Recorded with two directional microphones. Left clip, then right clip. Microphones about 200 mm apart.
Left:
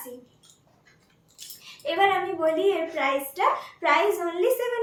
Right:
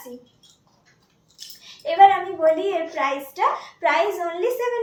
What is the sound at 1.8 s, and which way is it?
A woman's voice, 15° left (ahead or behind).